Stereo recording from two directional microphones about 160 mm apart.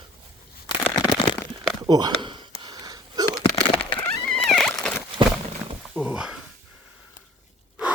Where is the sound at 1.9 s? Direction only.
25° right (ahead or behind).